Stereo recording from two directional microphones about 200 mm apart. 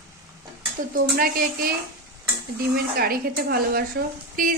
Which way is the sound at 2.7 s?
50° right (ahead or behind).